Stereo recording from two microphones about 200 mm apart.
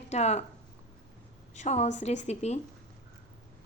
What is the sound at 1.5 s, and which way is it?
A woman's voice, 35° left (ahead or behind).